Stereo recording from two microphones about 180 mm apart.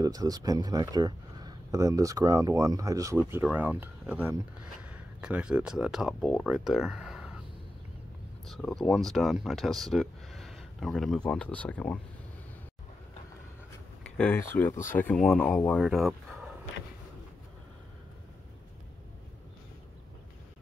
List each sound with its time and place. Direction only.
0.0 s speech: 20° right (ahead or behind); by 7.3 s 5° right (ahead or behind)
8.5 s speech: centre (ahead or behind)
14.0 s speech: 5° left (ahead or behind)